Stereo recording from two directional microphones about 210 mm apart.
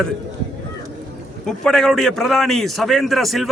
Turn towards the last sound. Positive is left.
turn(degrees=0)  # may be behind; listen again after turning